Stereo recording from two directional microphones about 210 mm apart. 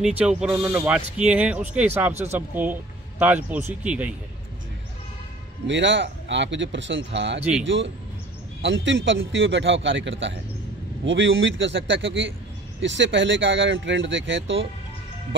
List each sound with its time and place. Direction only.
0.0 s speech: 5° right (ahead or behind)
5.7 s speech: 60° right (ahead or behind)